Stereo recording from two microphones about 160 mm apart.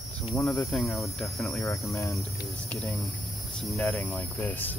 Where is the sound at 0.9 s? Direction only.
20° left (ahead or behind).